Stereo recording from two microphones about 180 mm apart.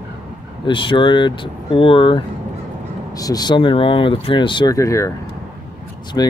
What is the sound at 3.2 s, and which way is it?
Speech, 20° left (ahead or behind).